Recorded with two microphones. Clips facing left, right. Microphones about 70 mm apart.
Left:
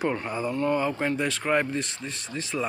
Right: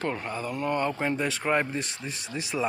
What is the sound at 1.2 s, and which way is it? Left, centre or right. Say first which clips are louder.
Speech: left 1 dB; centre.